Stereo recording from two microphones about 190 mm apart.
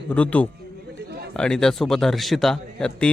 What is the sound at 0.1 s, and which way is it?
A man's voice, 5° left (ahead or behind).